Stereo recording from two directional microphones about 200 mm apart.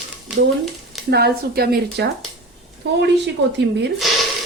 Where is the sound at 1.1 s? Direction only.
55° right (ahead or behind).